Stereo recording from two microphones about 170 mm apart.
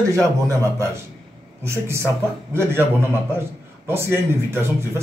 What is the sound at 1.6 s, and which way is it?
A man's voice, 15° right (ahead or behind).